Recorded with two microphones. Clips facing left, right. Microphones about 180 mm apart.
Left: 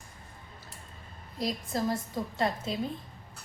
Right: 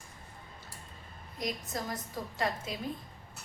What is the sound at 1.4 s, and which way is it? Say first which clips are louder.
A woman's voice: left 5 dB; 30° left (ahead or behind).